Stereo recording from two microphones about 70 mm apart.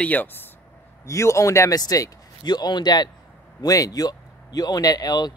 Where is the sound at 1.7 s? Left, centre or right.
Left.